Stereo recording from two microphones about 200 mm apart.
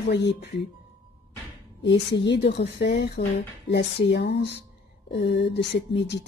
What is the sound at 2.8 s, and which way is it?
Speech, 60° left (ahead or behind).